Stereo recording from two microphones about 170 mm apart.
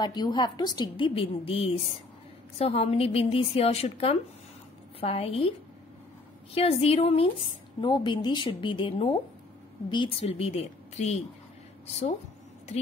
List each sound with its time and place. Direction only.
0.0 s a woman's voice: 25° left (ahead or behind)
6.5 s a woman's voice: 35° left (ahead or behind)